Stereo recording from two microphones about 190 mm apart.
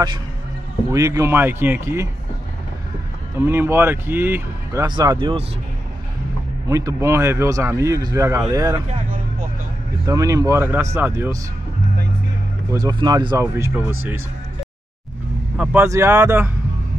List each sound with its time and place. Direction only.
0.9 s speech: 15° right (ahead or behind)
3.3 s speech: 10° right (ahead or behind)
4.8 s speech: 25° right (ahead or behind)
6.7 s speech: 15° right (ahead or behind)
10.0 s speech: 15° right (ahead or behind)
12.7 s speech: 20° right (ahead or behind)
15.5 s speech: 5° right (ahead or behind)